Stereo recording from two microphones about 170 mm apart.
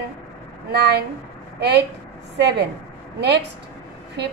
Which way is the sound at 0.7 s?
75° right (ahead or behind).